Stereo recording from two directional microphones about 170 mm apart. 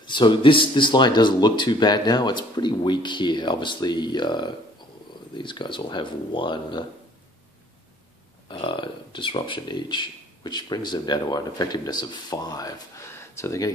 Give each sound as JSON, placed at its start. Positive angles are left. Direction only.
{"t": 0.0, "sound": "speech", "side_deg": 25}
{"t": 8.5, "sound": "speech", "side_deg": 30}